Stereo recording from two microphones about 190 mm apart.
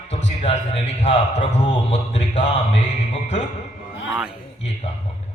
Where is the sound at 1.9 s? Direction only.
30° left (ahead or behind).